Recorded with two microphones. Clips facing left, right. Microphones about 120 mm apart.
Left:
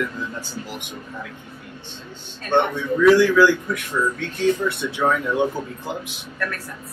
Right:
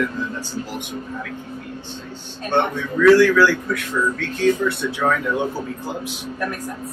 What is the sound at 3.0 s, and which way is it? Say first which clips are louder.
Speech: right 1 dB; 15° left (ahead or behind).